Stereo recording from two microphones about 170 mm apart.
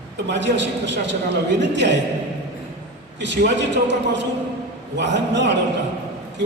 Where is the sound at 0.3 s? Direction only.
90° right.